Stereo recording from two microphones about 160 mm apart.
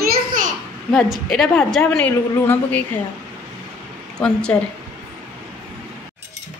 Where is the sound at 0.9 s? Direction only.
Centre (ahead or behind).